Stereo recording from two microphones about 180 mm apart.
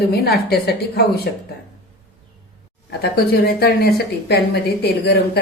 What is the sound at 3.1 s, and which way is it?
A woman's voice, 60° left (ahead or behind).